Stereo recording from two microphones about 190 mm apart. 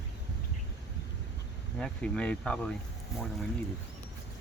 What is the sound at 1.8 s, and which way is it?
Speech, 5° left (ahead or behind).